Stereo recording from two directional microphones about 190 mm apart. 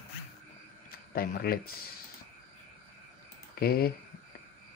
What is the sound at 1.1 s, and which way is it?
Speech, 50° left (ahead or behind).